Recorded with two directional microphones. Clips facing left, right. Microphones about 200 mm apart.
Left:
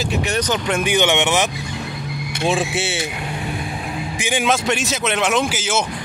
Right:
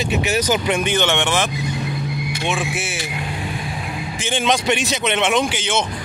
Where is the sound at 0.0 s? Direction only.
Centre (ahead or behind).